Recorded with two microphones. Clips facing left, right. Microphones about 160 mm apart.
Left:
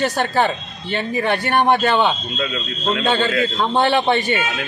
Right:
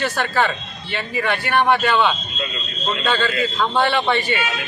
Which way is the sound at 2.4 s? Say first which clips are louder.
Left 4 dB; 80° left.